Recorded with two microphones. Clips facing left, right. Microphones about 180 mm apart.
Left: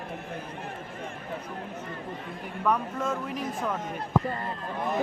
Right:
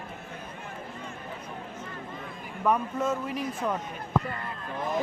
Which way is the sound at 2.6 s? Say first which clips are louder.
Right 2 dB; 5° right (ahead or behind).